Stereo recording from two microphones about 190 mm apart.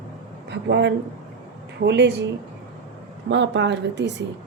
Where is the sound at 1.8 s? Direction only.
60° right (ahead or behind).